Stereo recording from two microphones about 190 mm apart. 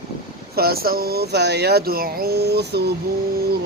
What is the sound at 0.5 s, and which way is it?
Speech, 55° right (ahead or behind).